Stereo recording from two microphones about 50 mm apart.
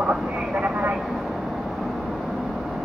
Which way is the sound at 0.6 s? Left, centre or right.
Right.